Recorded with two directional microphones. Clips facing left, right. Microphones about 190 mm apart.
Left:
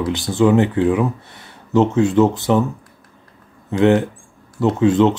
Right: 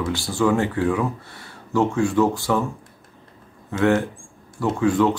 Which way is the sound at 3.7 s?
20° left (ahead or behind).